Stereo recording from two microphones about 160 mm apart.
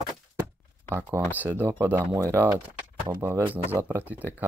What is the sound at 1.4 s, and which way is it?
Speech, 10° right (ahead or behind).